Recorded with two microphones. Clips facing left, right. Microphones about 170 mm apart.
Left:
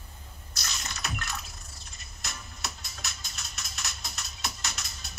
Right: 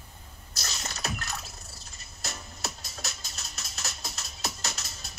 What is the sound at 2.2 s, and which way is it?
Music, 40° right (ahead or behind).